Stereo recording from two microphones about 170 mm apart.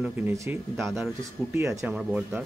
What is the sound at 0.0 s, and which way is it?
Speech, 15° right (ahead or behind).